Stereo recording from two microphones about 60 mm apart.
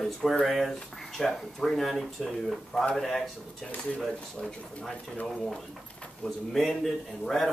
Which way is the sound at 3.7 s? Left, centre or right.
Left.